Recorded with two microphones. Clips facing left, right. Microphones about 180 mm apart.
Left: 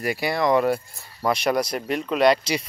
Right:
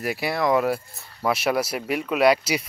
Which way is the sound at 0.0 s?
Centre (ahead or behind).